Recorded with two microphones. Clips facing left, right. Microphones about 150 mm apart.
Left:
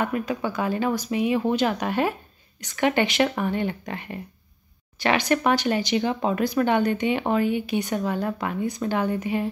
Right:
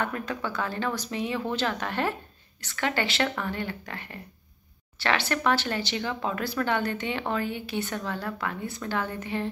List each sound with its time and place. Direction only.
0.0 s speech: 10° left (ahead or behind)